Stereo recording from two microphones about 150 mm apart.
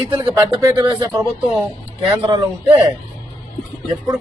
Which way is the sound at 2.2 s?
30° right (ahead or behind).